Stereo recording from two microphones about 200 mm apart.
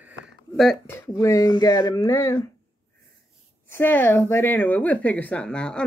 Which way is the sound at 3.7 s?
10° left (ahead or behind).